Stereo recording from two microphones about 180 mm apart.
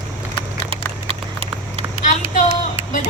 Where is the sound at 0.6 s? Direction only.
30° right (ahead or behind).